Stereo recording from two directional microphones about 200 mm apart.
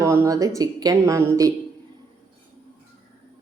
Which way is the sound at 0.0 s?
15° right (ahead or behind).